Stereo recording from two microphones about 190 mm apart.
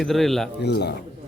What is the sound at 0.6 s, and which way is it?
Speech, 60° left (ahead or behind).